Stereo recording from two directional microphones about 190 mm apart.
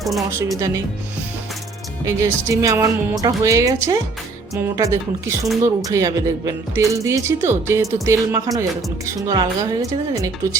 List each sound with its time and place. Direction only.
0.0 s speech: centre (ahead or behind)
0.3 s speech: 15° right (ahead or behind)
2.0 s speech: 15° right (ahead or behind)